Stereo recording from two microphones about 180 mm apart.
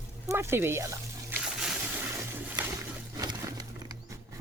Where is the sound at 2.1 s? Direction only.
15° right (ahead or behind).